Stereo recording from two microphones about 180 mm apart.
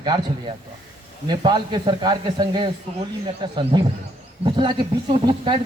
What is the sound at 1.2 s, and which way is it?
A man's voice, 25° right (ahead or behind).